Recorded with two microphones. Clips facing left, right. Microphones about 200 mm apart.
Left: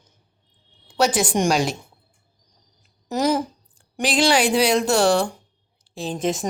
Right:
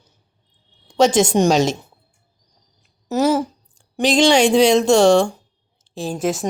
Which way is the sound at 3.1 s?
15° left (ahead or behind).